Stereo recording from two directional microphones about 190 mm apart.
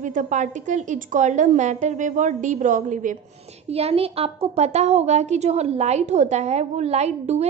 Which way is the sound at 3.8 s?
30° right (ahead or behind).